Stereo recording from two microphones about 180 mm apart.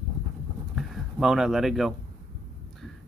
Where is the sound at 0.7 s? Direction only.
Centre (ahead or behind).